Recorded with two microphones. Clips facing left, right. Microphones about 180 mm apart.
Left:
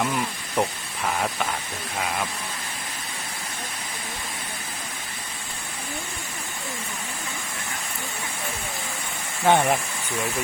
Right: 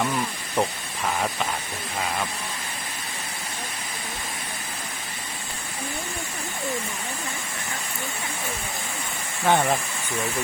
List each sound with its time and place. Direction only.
0.0 s speech: centre (ahead or behind)
9.5 s speech: 15° left (ahead or behind)